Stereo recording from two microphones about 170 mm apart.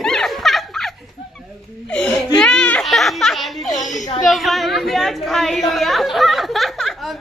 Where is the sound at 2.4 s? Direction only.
5° left (ahead or behind).